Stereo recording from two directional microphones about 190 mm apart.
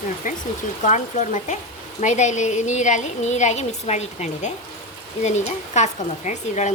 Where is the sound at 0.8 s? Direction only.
40° left (ahead or behind).